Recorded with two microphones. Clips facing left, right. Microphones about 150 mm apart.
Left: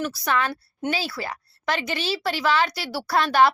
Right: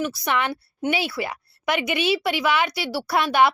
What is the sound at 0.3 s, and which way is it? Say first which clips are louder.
A woman's voice: left 2 dB; 20° right (ahead or behind).